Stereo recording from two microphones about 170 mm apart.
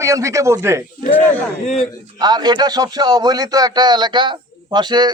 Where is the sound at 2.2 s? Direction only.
25° right (ahead or behind).